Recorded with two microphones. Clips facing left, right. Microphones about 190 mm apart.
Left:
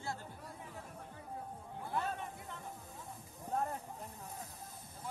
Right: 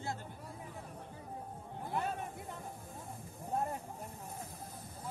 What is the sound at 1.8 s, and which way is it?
Chatter, 15° right (ahead or behind).